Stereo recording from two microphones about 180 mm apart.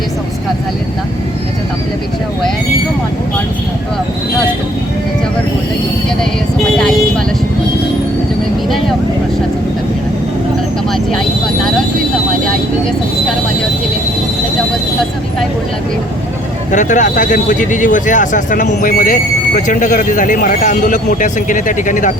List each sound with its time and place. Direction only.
16.7 s a man's voice: 45° left (ahead or behind)